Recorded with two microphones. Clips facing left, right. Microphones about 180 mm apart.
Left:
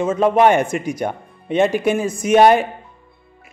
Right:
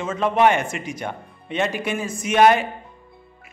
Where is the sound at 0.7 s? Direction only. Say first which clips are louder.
Left 7 dB; 45° left (ahead or behind).